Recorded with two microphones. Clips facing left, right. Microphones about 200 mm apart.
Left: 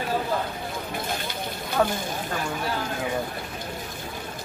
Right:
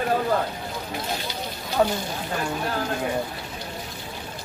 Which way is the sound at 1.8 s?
10° right (ahead or behind).